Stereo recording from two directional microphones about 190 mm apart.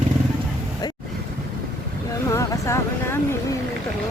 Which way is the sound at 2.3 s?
15° left (ahead or behind).